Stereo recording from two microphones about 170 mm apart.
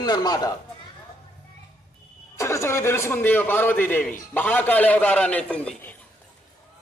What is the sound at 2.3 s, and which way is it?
A man's voice, 15° left (ahead or behind).